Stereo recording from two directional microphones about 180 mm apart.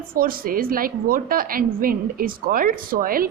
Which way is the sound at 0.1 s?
55° right (ahead or behind).